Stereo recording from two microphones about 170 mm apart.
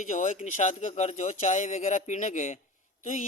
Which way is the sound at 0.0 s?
50° left (ahead or behind).